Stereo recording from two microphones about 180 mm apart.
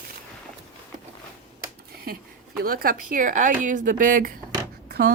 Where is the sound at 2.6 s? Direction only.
55° right (ahead or behind).